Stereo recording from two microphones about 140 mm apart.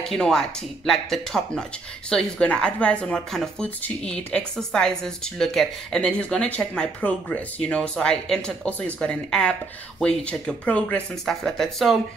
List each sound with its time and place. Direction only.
0.1 s speech: 5° left (ahead or behind)